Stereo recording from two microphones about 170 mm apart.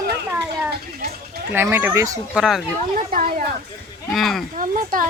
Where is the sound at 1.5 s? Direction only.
15° right (ahead or behind).